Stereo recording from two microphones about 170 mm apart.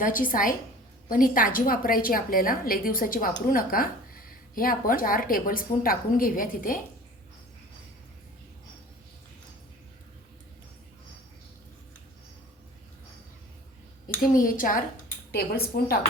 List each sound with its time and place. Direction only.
0.0 s a woman's voice: 55° left (ahead or behind)
14.2 s a woman's voice: 55° left (ahead or behind)